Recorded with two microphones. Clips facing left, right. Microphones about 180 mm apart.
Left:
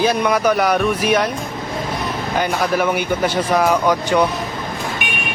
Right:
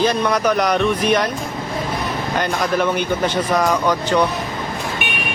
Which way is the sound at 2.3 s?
5° left (ahead or behind).